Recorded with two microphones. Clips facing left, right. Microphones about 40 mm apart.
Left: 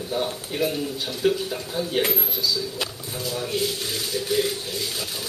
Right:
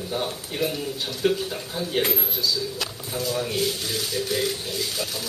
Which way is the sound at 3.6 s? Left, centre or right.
Centre.